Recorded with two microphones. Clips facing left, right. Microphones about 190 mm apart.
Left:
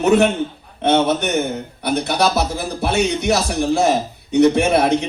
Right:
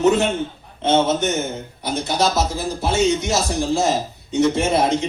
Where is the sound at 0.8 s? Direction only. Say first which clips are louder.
Left 1 dB; 65° left (ahead or behind).